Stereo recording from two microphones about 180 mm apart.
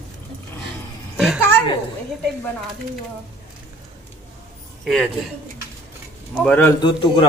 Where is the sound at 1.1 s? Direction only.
5° right (ahead or behind).